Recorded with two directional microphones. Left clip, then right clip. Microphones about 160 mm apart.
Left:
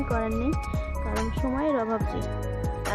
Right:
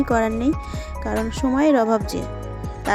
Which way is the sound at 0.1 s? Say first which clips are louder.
Right 6 dB; 40° right (ahead or behind).